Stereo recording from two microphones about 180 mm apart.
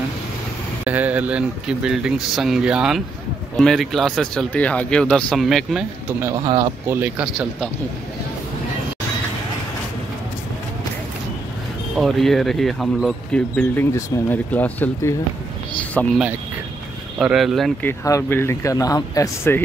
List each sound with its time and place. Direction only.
0.8 s speech: 10° right (ahead or behind)
6.4 s speech: 25° right (ahead or behind)
6.9 s speech: 10° right (ahead or behind)
12.0 s speech: centre (ahead or behind)
17.2 s speech: 5° right (ahead or behind)
17.8 s speech: 15° left (ahead or behind)